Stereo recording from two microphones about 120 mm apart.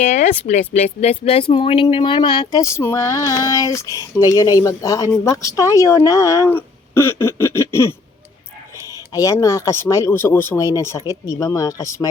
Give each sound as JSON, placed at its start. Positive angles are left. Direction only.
{"t": 0.0, "sound": "speech", "side_deg": 85}
{"t": 1.2, "sound": "speech", "side_deg": 55}
{"t": 2.6, "sound": "speech", "side_deg": 25}
{"t": 6.5, "sound": "a sound", "side_deg": 20}
{"t": 9.1, "sound": "speech", "side_deg": 25}